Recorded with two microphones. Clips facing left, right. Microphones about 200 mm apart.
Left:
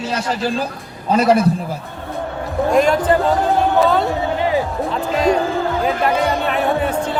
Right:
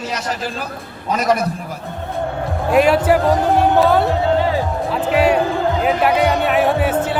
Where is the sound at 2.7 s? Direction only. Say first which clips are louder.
Right 2 dB; 5° right (ahead or behind).